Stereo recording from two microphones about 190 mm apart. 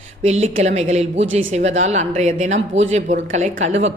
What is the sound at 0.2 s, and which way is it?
A woman's voice, 35° right (ahead or behind).